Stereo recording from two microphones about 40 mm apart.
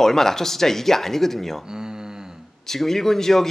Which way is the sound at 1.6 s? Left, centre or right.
Centre.